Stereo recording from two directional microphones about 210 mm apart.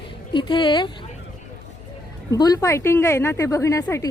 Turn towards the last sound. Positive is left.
turn(degrees=15)  # may be behind; listen again after turning